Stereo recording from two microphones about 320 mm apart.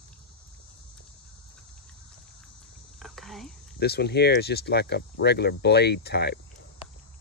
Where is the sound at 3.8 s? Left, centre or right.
Left.